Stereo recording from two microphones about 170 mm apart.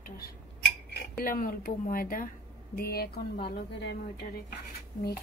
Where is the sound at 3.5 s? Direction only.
80° left.